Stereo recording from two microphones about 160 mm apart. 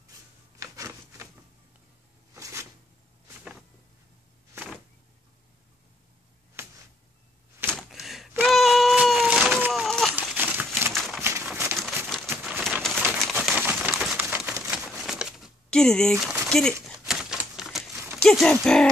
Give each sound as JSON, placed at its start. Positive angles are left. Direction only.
{"t": 0.6, "sound": "rub", "side_deg": -20}
{"t": 2.3, "sound": "shuffling cards", "side_deg": -20}
{"t": 6.6, "sound": "a sound", "side_deg": -15}
{"t": 7.7, "sound": "gasp", "side_deg": 0}
{"t": 8.5, "sound": "a sound", "side_deg": 0}
{"t": 10.2, "sound": "a sound", "side_deg": -10}
{"t": 11.2, "sound": "crumpling", "side_deg": -15}
{"t": 12.4, "sound": "a sound", "side_deg": 0}
{"t": 13.2, "sound": "bird", "side_deg": 0}
{"t": 13.6, "sound": "crumpling", "side_deg": -10}
{"t": 16.8, "sound": "typewriter", "side_deg": -5}
{"t": 18.2, "sound": "speech", "side_deg": 5}